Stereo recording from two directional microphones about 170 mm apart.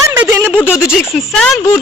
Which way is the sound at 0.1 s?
15° right (ahead or behind).